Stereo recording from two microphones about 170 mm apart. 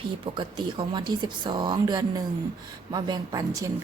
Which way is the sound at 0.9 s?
25° right (ahead or behind).